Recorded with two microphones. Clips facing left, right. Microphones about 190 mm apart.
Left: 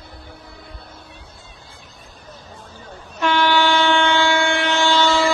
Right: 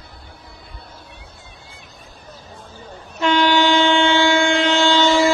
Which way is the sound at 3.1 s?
15° right (ahead or behind).